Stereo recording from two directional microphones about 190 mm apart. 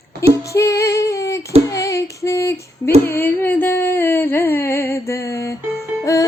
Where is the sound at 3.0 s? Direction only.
10° left (ahead or behind).